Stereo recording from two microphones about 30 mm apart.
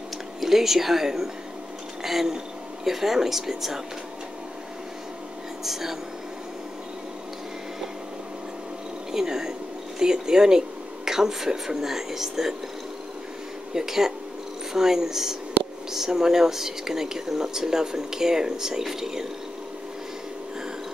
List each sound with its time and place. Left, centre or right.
0.4 s speech: centre
5.6 s speech: centre
9.1 s speech: centre
13.7 s speech: centre